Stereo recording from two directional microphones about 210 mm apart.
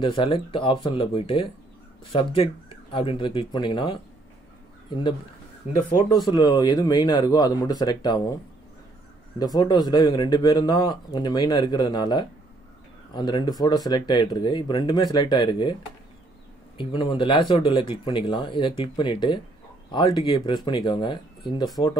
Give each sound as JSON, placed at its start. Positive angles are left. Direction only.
{"t": 0.0, "sound": "a man's voice", "side_deg": 25}
{"t": 9.4, "sound": "a man's voice", "side_deg": 20}